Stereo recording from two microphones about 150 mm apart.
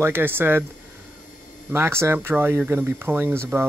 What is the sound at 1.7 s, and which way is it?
Speech, 15° right (ahead or behind).